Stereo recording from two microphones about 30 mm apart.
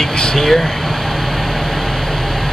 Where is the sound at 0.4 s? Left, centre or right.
Centre.